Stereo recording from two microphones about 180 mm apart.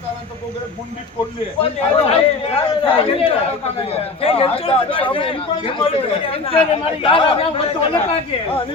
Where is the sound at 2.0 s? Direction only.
35° left (ahead or behind).